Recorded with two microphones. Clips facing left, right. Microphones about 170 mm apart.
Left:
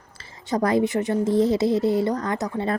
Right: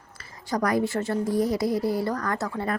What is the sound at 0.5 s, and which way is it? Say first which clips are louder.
A woman's voice: left 4 dB; 25° left (ahead or behind).